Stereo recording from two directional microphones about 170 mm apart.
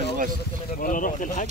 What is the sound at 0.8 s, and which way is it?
Speech, 50° left (ahead or behind).